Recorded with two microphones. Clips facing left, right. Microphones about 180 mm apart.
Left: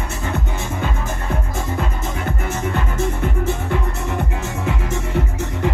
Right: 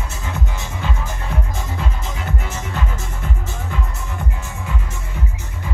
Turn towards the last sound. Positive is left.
turn(degrees=80)